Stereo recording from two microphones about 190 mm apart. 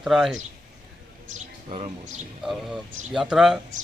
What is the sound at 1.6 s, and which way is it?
Speech, 30° right (ahead or behind).